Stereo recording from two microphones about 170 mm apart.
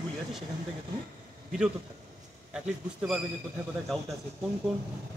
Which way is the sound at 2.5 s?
5° right (ahead or behind).